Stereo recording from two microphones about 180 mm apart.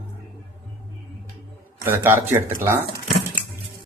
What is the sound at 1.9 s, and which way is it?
Speech, 10° right (ahead or behind).